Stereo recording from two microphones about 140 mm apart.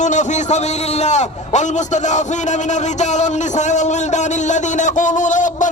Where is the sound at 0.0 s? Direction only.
60° left (ahead or behind).